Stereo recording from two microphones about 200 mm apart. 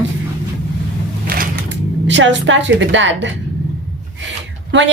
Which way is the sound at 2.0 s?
65° right (ahead or behind).